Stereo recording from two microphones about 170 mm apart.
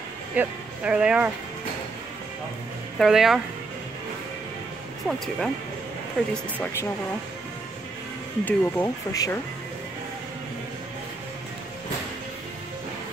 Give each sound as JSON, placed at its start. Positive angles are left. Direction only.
{"t": 0.4, "sound": "speech", "side_deg": -5}
{"t": 3.0, "sound": "speech", "side_deg": 0}
{"t": 5.0, "sound": "speech", "side_deg": 0}
{"t": 8.5, "sound": "speech", "side_deg": 15}